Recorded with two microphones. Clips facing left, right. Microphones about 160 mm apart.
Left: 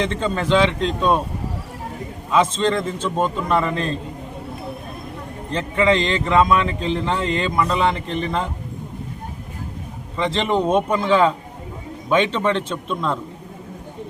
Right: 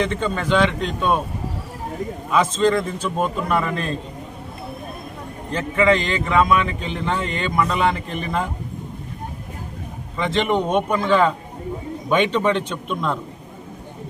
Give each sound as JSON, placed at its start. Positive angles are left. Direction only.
{"t": 0.0, "sound": "a man's voice", "side_deg": 30}
{"t": 2.3, "sound": "a man's voice", "side_deg": 25}
{"t": 5.5, "sound": "a man's voice", "side_deg": 30}
{"t": 10.3, "sound": "a man's voice", "side_deg": 30}
{"t": 10.8, "sound": "a man's voice", "side_deg": 0}